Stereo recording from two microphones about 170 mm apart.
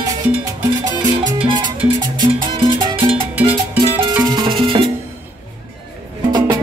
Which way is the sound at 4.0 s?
25° right (ahead or behind).